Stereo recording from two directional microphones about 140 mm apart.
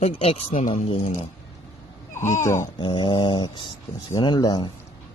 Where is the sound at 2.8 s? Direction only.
35° left (ahead or behind).